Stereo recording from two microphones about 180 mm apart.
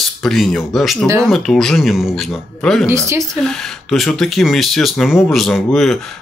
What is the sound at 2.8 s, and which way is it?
Speech, 15° right (ahead or behind).